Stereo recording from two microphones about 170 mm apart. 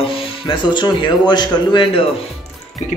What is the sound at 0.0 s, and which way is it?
Speech, 30° left (ahead or behind).